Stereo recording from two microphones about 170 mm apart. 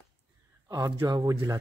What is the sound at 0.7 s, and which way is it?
Speech, 20° right (ahead or behind).